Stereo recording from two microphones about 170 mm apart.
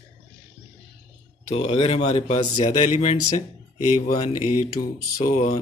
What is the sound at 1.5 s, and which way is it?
Speech, 35° left (ahead or behind).